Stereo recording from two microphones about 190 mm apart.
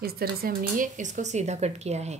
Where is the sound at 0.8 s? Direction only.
40° right (ahead or behind).